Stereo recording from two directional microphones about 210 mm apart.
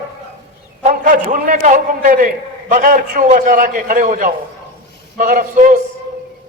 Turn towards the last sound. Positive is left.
turn(degrees=-40)  # may be behind; listen again after turning